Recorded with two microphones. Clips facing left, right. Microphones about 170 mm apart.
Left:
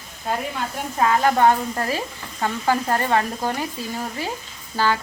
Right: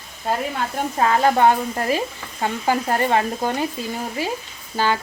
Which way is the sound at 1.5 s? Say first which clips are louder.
Right 2 dB; 15° right (ahead or behind).